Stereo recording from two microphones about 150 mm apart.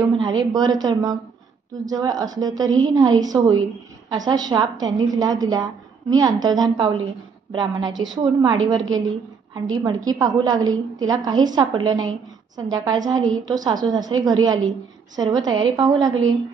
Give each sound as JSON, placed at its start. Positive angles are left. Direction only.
{"t": 0.2, "sound": "a woman's voice", "side_deg": -30}